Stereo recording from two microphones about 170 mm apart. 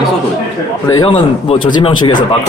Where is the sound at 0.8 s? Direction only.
20° left (ahead or behind).